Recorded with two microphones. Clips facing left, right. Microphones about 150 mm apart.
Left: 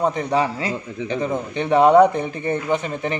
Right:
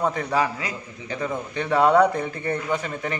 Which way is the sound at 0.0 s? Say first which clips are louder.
Left 3 dB; 20° left (ahead or behind).